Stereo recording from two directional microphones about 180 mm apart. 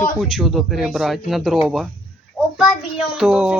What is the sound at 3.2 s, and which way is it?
Speech, centre (ahead or behind).